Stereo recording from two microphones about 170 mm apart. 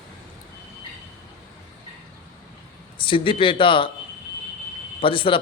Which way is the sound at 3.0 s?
30° left (ahead or behind).